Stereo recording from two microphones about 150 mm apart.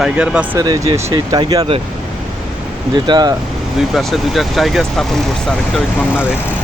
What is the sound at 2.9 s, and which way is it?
Speech, 30° right (ahead or behind).